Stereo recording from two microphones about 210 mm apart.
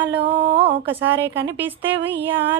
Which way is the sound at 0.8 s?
10° right (ahead or behind).